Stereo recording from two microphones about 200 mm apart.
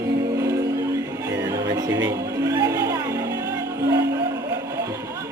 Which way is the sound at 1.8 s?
15° right (ahead or behind).